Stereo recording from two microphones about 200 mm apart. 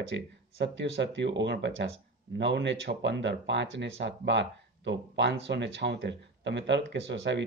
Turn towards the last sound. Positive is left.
turn(degrees=-60)  # may be behind; listen again after turning